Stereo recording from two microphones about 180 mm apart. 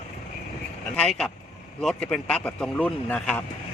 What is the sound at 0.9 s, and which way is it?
Speech, 5° left (ahead or behind).